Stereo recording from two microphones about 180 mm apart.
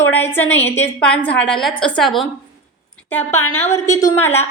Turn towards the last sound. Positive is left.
turn(degrees=10)  # may be behind; listen again after turning